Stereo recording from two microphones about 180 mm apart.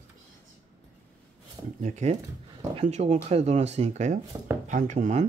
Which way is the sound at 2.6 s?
35° right (ahead or behind).